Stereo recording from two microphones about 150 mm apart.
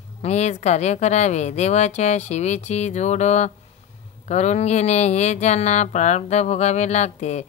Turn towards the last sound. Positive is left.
turn(degrees=50)  # may be behind; listen again after turning